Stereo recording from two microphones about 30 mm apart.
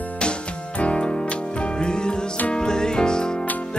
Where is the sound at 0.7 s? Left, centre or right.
Left.